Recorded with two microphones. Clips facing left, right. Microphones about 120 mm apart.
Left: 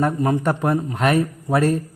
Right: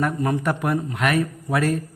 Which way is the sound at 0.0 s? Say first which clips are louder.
Left 3 dB; 20° left (ahead or behind).